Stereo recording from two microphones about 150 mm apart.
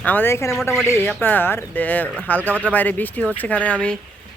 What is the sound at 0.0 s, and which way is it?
Speech, 10° left (ahead or behind).